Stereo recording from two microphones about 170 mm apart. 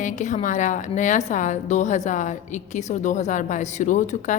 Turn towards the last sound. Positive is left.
turn(degrees=45)  # may be behind; listen again after turning